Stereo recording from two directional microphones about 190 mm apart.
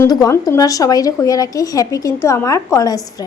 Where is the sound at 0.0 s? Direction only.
20° left (ahead or behind).